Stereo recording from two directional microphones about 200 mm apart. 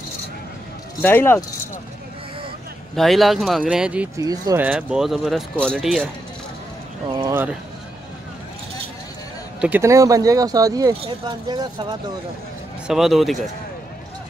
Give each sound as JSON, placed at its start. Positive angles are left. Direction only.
{"t": 1.0, "sound": "speech", "side_deg": 10}
{"t": 3.0, "sound": "speech", "side_deg": 0}
{"t": 4.2, "sound": "speech", "side_deg": -15}
{"t": 4.6, "sound": "speech", "side_deg": -5}
{"t": 9.6, "sound": "speech", "side_deg": -10}
{"t": 12.8, "sound": "speech", "side_deg": 0}